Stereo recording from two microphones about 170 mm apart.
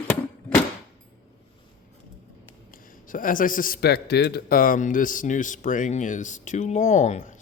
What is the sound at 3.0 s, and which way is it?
A man's voice, 55° left (ahead or behind).